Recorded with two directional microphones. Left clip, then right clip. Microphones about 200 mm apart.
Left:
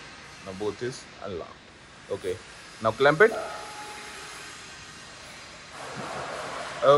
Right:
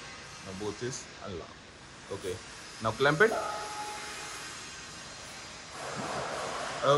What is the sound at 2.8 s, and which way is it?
Speech, 15° right (ahead or behind).